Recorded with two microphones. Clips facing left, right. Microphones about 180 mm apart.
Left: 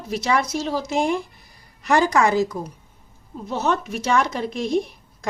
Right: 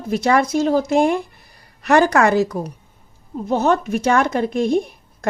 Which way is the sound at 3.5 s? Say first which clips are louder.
Right 6 dB; 50° right (ahead or behind).